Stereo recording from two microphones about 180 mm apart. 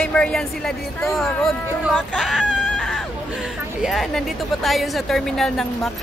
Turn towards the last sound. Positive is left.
turn(degrees=0)  # may be behind; listen again after turning